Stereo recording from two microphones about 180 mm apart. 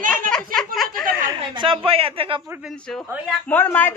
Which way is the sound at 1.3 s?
25° right (ahead or behind).